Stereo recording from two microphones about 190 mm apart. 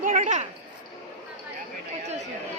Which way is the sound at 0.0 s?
40° right (ahead or behind).